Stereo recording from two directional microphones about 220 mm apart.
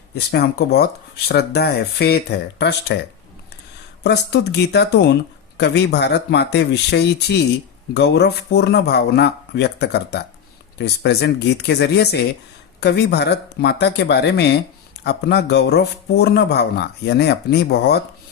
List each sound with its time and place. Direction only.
0.3 s speech: 45° left (ahead or behind)
4.0 s speech: 50° left (ahead or behind)